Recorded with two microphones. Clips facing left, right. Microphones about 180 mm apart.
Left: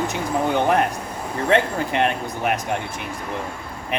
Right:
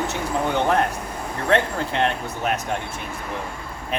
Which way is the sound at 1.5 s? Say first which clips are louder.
Left 1 dB; 15° left (ahead or behind).